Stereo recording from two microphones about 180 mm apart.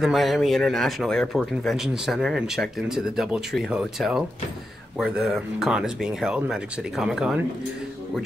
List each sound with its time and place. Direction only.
0.0 s speech: centre (ahead or behind)